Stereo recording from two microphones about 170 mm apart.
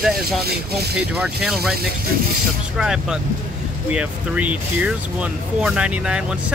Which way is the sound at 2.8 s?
5° right (ahead or behind).